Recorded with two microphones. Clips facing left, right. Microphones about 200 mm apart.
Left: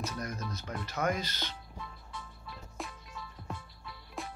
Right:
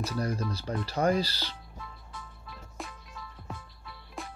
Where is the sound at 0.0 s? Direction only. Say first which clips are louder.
Right 6 dB; 30° right (ahead or behind).